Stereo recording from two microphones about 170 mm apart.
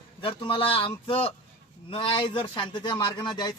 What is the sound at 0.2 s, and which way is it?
Speech, 30° left (ahead or behind).